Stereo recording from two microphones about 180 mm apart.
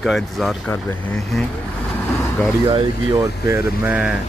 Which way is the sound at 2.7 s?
15° right (ahead or behind).